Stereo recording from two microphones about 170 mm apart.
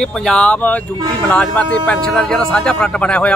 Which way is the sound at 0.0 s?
5° left (ahead or behind).